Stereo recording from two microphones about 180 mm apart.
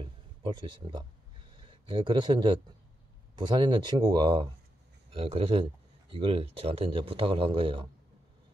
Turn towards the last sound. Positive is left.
turn(degrees=-30)  # may be behind; listen again after turning